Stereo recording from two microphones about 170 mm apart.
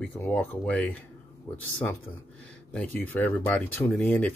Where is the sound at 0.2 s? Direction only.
10° left (ahead or behind).